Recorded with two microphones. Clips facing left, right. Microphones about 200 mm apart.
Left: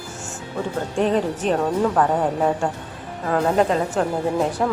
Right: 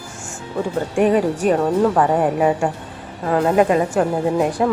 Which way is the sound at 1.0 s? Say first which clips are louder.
Right 4 dB; 10° right (ahead or behind).